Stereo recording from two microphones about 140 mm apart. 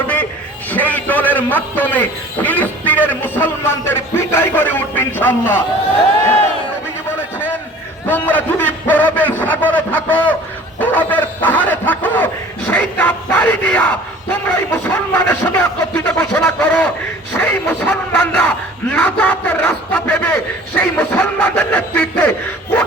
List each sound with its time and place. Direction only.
0.7 s a man's voice: 10° left (ahead or behind)
8.0 s a man's voice: 15° left (ahead or behind)
10.8 s a sound: 15° left (ahead or behind)
14.3 s a man's voice: 15° left (ahead or behind)